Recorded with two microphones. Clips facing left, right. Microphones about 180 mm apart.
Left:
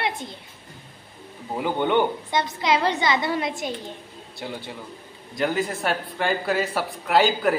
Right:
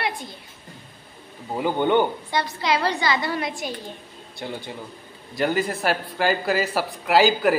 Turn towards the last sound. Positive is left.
turn(degrees=-5)  # may be behind; listen again after turning